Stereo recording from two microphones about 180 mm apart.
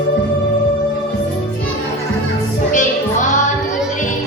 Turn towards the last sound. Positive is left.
turn(degrees=45)  # may be behind; listen again after turning